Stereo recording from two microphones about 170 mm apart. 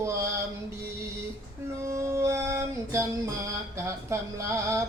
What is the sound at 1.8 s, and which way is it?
Speech, 15° right (ahead or behind).